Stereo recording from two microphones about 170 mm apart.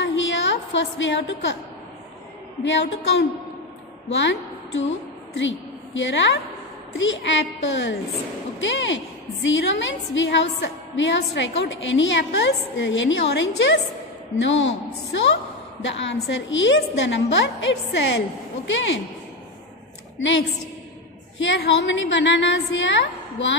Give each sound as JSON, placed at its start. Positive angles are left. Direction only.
{"t": 0.0, "sound": "a sound", "side_deg": 90}
{"t": 2.6, "sound": "a woman's voice", "side_deg": 90}
{"t": 18.7, "sound": "a woman's voice", "side_deg": 90}
{"t": 21.4, "sound": "a woman's voice", "side_deg": 90}